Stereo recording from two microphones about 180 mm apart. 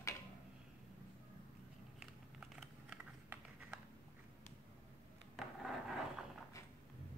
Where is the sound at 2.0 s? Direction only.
5° right (ahead or behind).